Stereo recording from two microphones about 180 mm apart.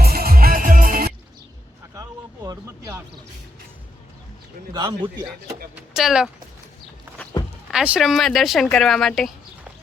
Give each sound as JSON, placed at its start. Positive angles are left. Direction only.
{"t": 0.0, "sound": "music", "side_deg": -55}
{"t": 2.0, "sound": "a sound", "side_deg": -20}
{"t": 4.7, "sound": "a man's voice", "side_deg": -25}
{"t": 5.7, "sound": "speech", "side_deg": -5}
{"t": 7.7, "sound": "speech", "side_deg": -5}